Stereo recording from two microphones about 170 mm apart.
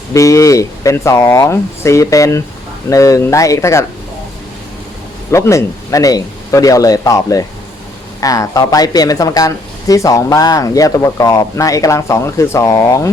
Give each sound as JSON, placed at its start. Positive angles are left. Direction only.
{"t": 0.1, "sound": "speech", "side_deg": 20}
{"t": 5.3, "sound": "speech", "side_deg": 15}